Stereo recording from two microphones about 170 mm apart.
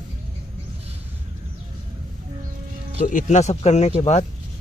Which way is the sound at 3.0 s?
45° left (ahead or behind).